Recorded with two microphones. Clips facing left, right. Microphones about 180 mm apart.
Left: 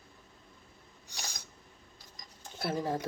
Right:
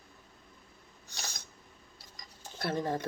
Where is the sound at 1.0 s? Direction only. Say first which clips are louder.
Even; 15° left (ahead or behind).